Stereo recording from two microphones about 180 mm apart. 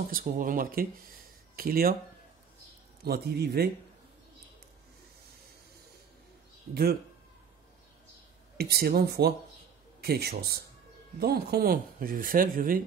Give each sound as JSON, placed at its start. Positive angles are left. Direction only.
{"t": 0.0, "sound": "speech", "side_deg": -50}
{"t": 3.0, "sound": "a man's voice", "side_deg": -60}
{"t": 6.7, "sound": "a man's voice", "side_deg": -60}
{"t": 8.5, "sound": "a man's voice", "side_deg": -60}